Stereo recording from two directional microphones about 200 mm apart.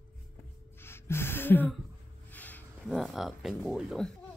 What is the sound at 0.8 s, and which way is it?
Gasp, 10° left (ahead or behind).